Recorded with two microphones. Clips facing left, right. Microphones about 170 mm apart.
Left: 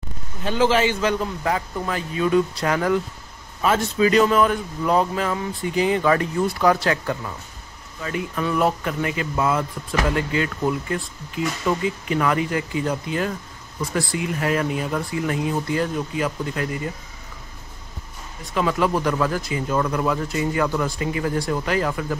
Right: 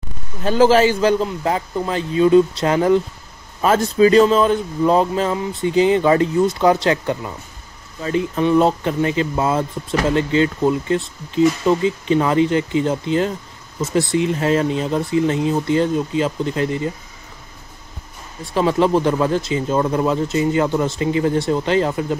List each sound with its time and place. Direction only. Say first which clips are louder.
0.4 s speech: right 6 dB; 40° right (ahead or behind)
1.2 s speech: right 3 dB; 25° right (ahead or behind)
3.6 s speech: right 5 dB; 35° right (ahead or behind)
18.5 s speech: right 5 dB; 30° right (ahead or behind)